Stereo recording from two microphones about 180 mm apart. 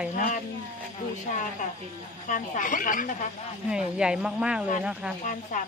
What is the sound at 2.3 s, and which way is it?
Speech, 45° left (ahead or behind).